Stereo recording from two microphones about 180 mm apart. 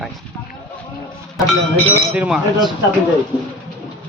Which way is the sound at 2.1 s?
5° right (ahead or behind).